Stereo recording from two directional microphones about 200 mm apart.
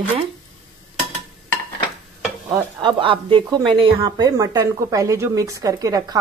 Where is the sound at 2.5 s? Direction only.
25° right (ahead or behind).